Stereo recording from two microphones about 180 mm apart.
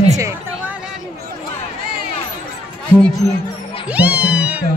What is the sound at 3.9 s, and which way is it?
Cat, 10° right (ahead or behind).